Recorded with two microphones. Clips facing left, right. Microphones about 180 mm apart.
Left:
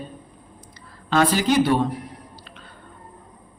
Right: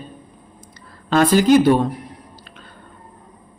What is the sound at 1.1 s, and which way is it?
Speech, 45° right (ahead or behind).